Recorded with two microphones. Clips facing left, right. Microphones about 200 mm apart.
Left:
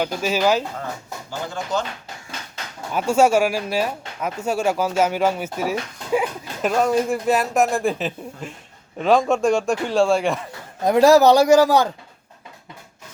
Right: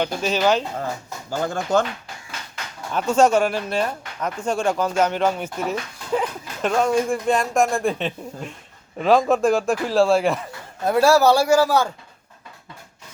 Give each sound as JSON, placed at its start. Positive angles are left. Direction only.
{"t": 0.0, "sound": "speech", "side_deg": 5}
{"t": 1.3, "sound": "speech", "side_deg": -50}
{"t": 2.9, "sound": "speech", "side_deg": 10}
{"t": 10.8, "sound": "speech", "side_deg": 15}